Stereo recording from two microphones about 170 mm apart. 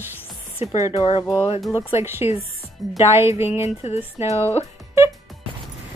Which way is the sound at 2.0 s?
15° right (ahead or behind).